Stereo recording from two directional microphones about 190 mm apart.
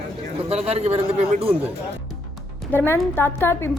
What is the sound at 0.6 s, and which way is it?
Speech, 35° right (ahead or behind).